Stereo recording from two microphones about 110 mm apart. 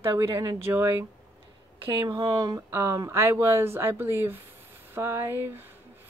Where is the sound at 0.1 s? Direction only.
35° right (ahead or behind).